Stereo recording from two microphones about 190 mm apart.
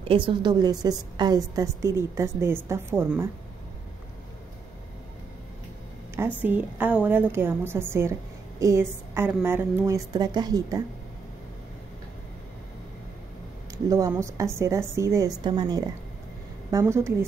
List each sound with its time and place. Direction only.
0.0 s a woman's voice: 25° right (ahead or behind)
6.1 s a woman's voice: 10° right (ahead or behind)
13.8 s a woman's voice: 15° right (ahead or behind)